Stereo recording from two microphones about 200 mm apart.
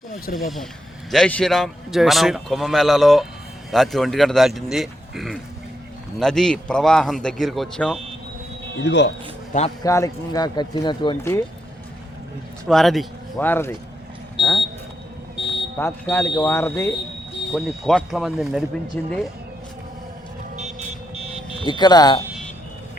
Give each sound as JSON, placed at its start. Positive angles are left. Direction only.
{"t": 0.3, "sound": "a man's voice", "side_deg": 0}
{"t": 8.8, "sound": "speech", "side_deg": 60}
{"t": 9.5, "sound": "a man's voice", "side_deg": 35}
{"t": 9.8, "sound": "speech", "side_deg": 15}
{"t": 12.6, "sound": "speech", "side_deg": 0}
{"t": 13.5, "sound": "speech", "side_deg": 10}
{"t": 15.4, "sound": "a sound", "side_deg": 60}
{"t": 15.8, "sound": "speech", "side_deg": 10}
{"t": 17.5, "sound": "a man's voice", "side_deg": 0}
{"t": 20.6, "sound": "vehicle", "side_deg": -35}
{"t": 21.7, "sound": "speech", "side_deg": 20}